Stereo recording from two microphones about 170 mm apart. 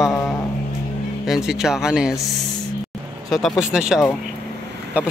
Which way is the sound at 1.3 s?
5° right (ahead or behind).